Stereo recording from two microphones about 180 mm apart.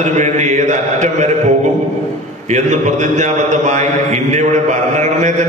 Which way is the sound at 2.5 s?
40° right (ahead or behind).